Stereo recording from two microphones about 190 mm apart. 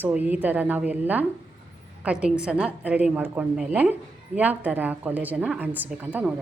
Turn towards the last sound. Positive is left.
turn(degrees=-10)  # may be behind; listen again after turning